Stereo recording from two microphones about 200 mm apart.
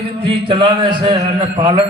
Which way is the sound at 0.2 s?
25° right (ahead or behind).